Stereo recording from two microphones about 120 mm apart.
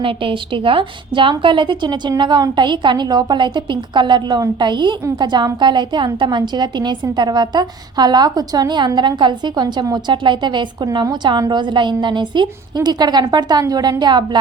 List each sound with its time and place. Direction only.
0.0 s a woman's voice: 45° right (ahead or behind)